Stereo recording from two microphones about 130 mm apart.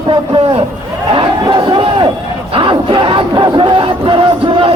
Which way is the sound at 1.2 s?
35° right (ahead or behind).